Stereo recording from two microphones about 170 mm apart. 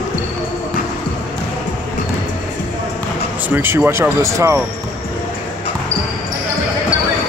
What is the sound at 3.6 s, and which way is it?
Speech, 10° right (ahead or behind).